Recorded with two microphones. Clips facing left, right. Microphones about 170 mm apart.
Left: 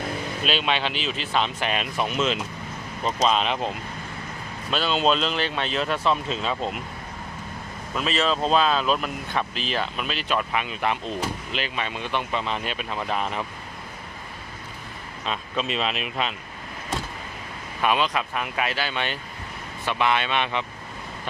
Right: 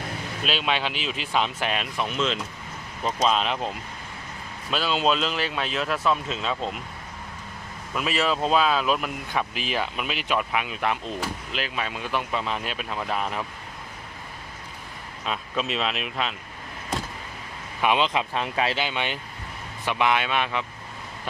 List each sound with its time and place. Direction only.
0.4 s speech: centre (ahead or behind)
4.7 s speech: 5° right (ahead or behind)
7.9 s speech: 10° right (ahead or behind)
15.3 s speech: centre (ahead or behind)
17.8 s speech: 20° right (ahead or behind); by 20.7 s 5° right (ahead or behind)